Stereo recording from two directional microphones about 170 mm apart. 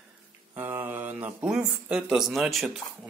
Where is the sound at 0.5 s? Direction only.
10° right (ahead or behind).